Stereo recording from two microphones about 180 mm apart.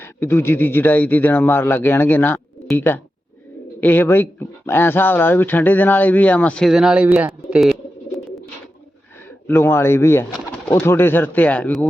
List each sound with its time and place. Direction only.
0.0 s a man's voice: 15° left (ahead or behind); by 7.8 s 5° right (ahead or behind)
9.5 s a man's voice: 15° left (ahead or behind)